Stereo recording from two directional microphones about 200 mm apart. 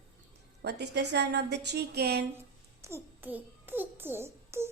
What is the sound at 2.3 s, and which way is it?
Child singing, 15° right (ahead or behind).